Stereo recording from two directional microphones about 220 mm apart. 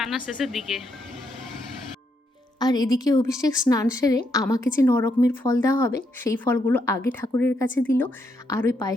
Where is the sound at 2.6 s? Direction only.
20° left (ahead or behind).